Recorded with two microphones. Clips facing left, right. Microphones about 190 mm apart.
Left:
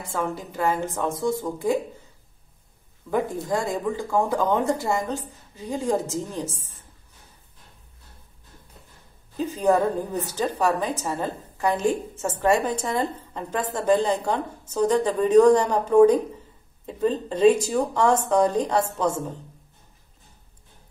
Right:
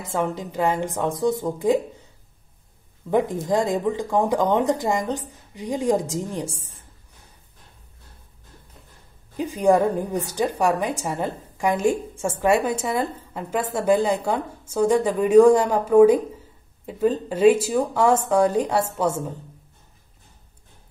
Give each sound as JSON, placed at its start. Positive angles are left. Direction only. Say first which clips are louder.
{"t": 0.0, "sound": "a woman's voice", "louder": "right 3 dB", "side_deg": -20}
{"t": 3.1, "sound": "a woman's voice", "louder": "right 4 dB", "side_deg": -20}
{"t": 9.4, "sound": "a woman's voice", "louder": "right 2 dB", "side_deg": -15}